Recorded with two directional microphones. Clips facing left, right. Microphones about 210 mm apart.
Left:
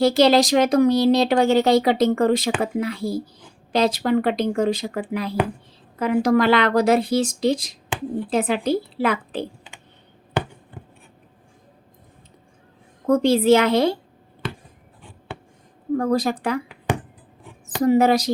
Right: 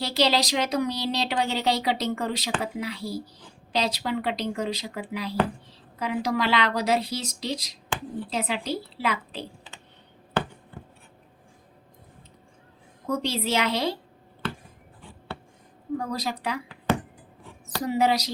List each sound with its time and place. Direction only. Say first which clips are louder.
0.0 s speech: left 9 dB; 50° left (ahead or behind)
10.4 s a sound: left 2 dB; 15° left (ahead or behind)
13.1 s speech: left 12 dB; 50° left (ahead or behind)
16.0 s speech: left 11 dB; 50° left (ahead or behind)
16.9 s a sound: left 1 dB; 15° left (ahead or behind)
17.8 s speech: left 8 dB; 50° left (ahead or behind)